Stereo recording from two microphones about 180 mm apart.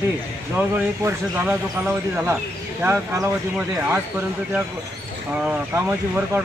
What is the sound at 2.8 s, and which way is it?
Speech, 10° right (ahead or behind).